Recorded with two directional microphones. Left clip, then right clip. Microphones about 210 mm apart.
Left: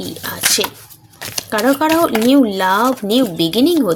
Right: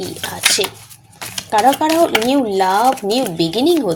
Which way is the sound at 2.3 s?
25° left (ahead or behind).